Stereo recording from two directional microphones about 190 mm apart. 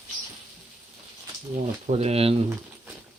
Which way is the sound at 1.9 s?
35° right (ahead or behind).